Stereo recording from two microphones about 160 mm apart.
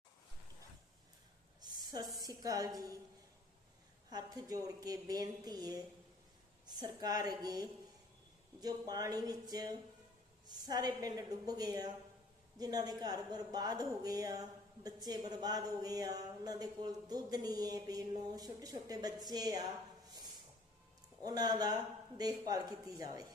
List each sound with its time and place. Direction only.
1.9 s a sound: 25° right (ahead or behind)
2.2 s speech: 20° right (ahead or behind)
4.1 s speech: 25° right (ahead or behind)
21.2 s speech: 25° right (ahead or behind)